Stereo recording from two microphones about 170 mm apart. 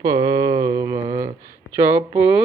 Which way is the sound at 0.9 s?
30° right (ahead or behind).